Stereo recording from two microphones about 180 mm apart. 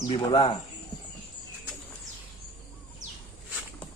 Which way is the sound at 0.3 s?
30° left (ahead or behind).